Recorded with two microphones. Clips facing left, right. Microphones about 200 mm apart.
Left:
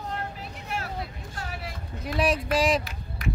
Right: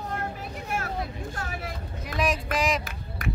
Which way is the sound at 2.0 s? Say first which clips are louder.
Left 3 dB; 30° left (ahead or behind).